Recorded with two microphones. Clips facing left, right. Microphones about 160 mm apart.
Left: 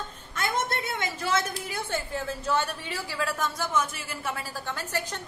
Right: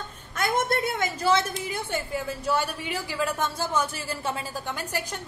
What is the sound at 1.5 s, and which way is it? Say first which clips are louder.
A woman's voice: right 2 dB; 20° right (ahead or behind).